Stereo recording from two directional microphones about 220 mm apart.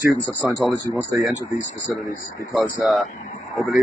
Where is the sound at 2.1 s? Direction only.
40° left (ahead or behind).